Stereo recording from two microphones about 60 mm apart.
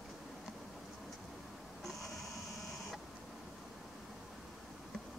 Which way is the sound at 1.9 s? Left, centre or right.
Centre.